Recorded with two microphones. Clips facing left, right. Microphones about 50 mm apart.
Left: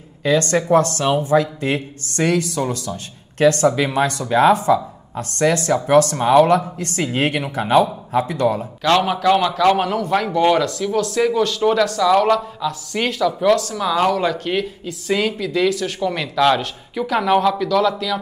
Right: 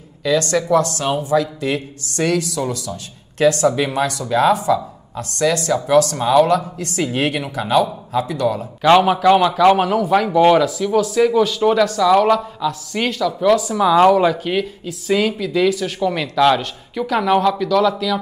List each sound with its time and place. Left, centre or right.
0.2 s speech: left
8.8 s a man's voice: centre